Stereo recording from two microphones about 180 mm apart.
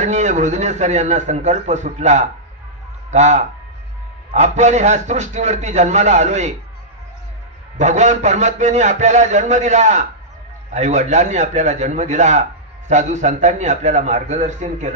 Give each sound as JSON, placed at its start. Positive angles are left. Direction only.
{"t": 0.0, "sound": "a man's voice", "side_deg": -40}
{"t": 7.8, "sound": "a man's voice", "side_deg": -40}